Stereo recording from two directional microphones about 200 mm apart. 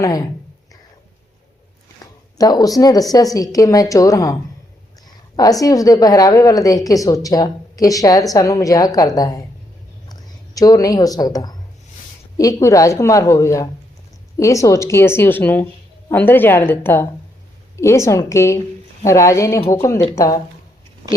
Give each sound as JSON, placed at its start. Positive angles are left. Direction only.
{"t": 2.4, "sound": "a woman's voice", "side_deg": 20}
{"t": 5.4, "sound": "a woman's voice", "side_deg": 20}